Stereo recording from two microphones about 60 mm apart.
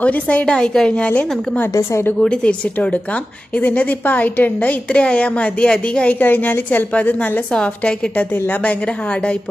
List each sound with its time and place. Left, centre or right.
0.0 s a woman's voice: left
1.7 s a woman's voice: left
2.1 s a woman's voice: centre
7.5 s a woman's voice: centre